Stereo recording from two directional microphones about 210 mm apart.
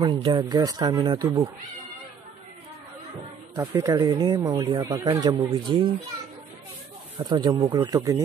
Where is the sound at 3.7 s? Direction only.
20° right (ahead or behind).